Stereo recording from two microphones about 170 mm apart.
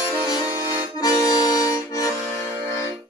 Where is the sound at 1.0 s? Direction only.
20° left (ahead or behind).